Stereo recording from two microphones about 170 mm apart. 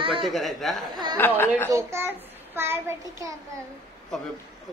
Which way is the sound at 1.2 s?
10° left (ahead or behind).